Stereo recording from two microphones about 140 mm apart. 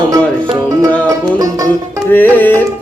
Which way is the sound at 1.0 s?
25° right (ahead or behind).